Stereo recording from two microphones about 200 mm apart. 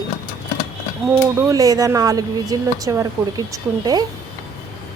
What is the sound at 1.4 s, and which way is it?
A woman's voice, 15° right (ahead or behind).